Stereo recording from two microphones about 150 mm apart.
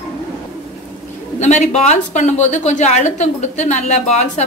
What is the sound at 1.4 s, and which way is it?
A woman's voice, 50° left (ahead or behind).